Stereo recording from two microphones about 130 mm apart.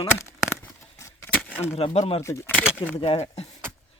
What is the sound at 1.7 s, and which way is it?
Speech, 50° left (ahead or behind).